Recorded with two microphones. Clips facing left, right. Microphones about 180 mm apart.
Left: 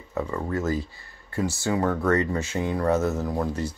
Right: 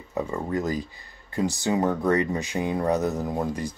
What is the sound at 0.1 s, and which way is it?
Speech, 15° right (ahead or behind).